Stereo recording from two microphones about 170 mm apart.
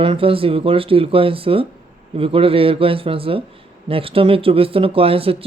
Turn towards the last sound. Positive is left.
turn(degrees=-35)  # may be behind; listen again after turning